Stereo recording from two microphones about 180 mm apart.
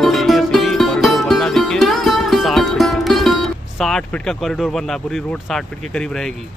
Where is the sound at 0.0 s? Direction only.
Centre (ahead or behind).